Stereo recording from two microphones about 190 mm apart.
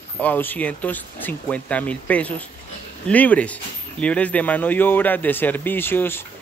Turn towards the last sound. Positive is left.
turn(degrees=10)  # may be behind; listen again after turning